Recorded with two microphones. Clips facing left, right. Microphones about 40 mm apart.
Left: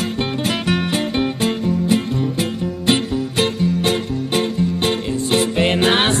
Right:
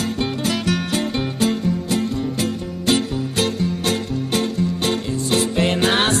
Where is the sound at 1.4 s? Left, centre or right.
Left.